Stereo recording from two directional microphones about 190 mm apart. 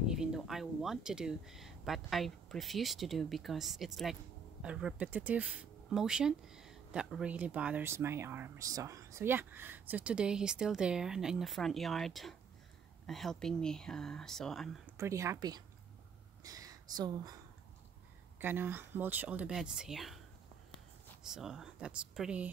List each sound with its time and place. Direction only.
0.0 s speech: 5° right (ahead or behind)
14.9 s speech: 15° right (ahead or behind)
18.4 s speech: 10° right (ahead or behind)